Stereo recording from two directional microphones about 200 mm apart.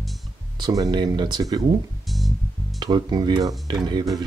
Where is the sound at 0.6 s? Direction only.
20° right (ahead or behind).